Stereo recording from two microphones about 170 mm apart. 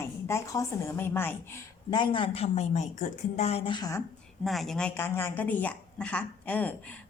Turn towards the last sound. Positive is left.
turn(degrees=10)  # may be behind; listen again after turning